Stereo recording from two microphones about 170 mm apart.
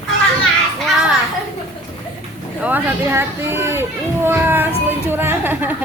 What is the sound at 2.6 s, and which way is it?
A woman's voice, 10° right (ahead or behind).